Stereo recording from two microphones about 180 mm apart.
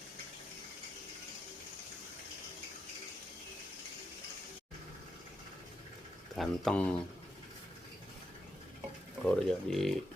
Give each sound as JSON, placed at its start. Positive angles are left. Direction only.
{"t": 6.3, "sound": "speech", "side_deg": 0}
{"t": 9.2, "sound": "speech", "side_deg": 5}